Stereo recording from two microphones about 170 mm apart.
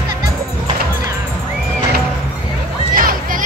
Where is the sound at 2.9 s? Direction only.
55° right (ahead or behind).